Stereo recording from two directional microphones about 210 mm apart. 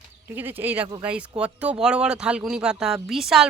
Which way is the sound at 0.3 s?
10° right (ahead or behind).